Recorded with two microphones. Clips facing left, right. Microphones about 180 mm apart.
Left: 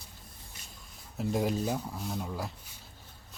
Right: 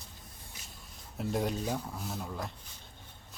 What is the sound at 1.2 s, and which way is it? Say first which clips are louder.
Speech: left 3 dB; centre (ahead or behind).